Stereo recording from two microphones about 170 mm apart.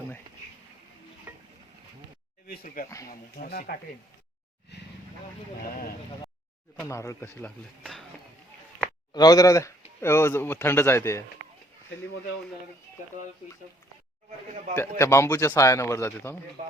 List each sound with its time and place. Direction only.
1.3 s stir: 10° right (ahead or behind)
2.5 s speech: 55° left (ahead or behind)
4.7 s vehicle: 85° left
5.6 s speech: 60° left (ahead or behind)
6.8 s a man's voice: 15° left (ahead or behind)
9.1 s a man's voice: 20° left (ahead or behind)
14.8 s a man's voice: 15° left (ahead or behind)
16.6 s a man's voice: 50° right (ahead or behind)